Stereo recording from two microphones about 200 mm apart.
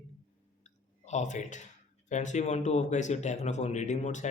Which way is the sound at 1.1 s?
35° left (ahead or behind).